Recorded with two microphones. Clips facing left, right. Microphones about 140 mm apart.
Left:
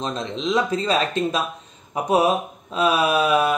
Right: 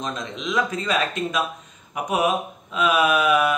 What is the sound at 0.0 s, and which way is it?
A man's voice, 30° left (ahead or behind).